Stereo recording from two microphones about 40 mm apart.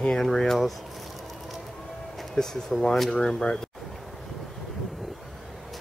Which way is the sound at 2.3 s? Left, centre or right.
Centre.